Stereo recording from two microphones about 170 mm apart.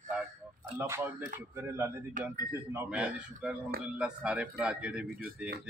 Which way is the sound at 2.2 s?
50° right (ahead or behind).